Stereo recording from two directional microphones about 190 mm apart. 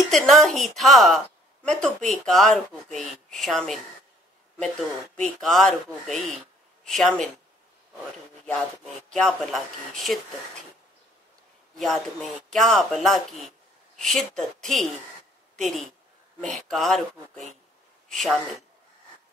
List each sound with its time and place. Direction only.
0.1 s a woman's voice: centre (ahead or behind)
9.1 s a woman's voice: centre (ahead or behind)
11.7 s a woman's voice: centre (ahead or behind)